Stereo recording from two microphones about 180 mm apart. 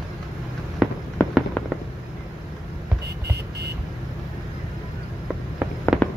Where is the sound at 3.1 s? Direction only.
65° right (ahead or behind).